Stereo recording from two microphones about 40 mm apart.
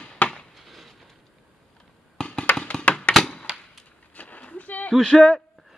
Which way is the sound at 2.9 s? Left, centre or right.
Left.